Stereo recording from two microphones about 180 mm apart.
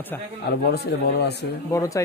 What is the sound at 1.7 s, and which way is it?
Speech, 15° left (ahead or behind).